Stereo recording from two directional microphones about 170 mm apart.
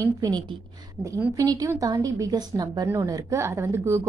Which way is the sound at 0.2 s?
25° right (ahead or behind).